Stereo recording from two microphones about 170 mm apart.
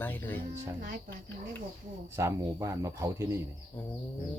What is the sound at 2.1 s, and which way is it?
Speech, 15° right (ahead or behind).